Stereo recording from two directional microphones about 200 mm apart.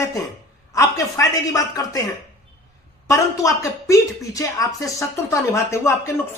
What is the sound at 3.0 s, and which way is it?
A man's voice, 15° left (ahead or behind).